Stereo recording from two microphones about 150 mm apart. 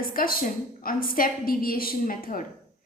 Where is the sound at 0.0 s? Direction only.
70° left (ahead or behind).